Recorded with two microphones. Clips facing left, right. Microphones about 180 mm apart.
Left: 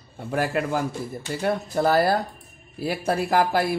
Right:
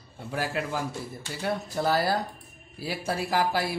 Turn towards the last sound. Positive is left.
turn(degrees=55)  # may be behind; listen again after turning